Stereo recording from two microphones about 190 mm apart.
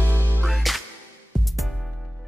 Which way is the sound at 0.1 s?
5° left (ahead or behind).